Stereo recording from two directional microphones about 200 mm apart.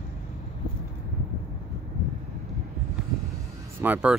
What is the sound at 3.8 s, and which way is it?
Speech, 5° right (ahead or behind).